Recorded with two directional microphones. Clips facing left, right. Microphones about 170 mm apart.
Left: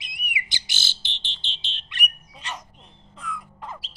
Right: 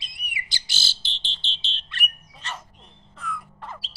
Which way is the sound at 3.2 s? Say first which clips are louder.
Right 1 dB; 10° left (ahead or behind).